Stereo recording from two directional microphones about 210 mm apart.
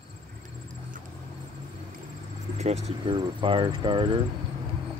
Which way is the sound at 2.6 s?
30° right (ahead or behind).